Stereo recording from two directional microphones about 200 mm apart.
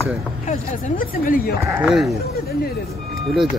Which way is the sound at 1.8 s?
Centre (ahead or behind).